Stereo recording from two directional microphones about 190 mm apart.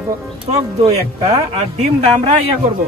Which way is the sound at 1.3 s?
35° right (ahead or behind).